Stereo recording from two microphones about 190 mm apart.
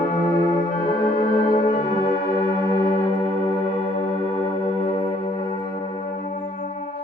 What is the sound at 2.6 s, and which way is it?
Music, 20° left (ahead or behind).